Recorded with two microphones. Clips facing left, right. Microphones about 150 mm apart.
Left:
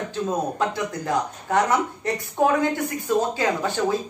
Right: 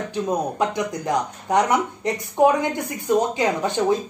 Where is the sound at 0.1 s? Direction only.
15° right (ahead or behind).